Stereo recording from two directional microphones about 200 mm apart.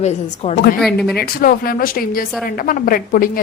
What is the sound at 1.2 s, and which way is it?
A woman's voice, 45° left (ahead or behind).